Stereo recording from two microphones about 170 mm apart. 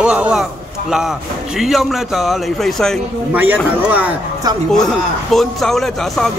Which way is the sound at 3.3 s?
10° right (ahead or behind).